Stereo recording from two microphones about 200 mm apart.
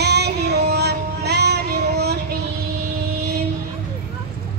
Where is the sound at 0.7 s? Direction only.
55° right (ahead or behind).